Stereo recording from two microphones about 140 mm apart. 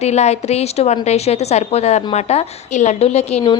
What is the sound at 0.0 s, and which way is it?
A woman's voice, 50° left (ahead or behind).